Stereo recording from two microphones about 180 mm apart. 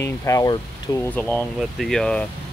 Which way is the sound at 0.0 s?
15° left (ahead or behind).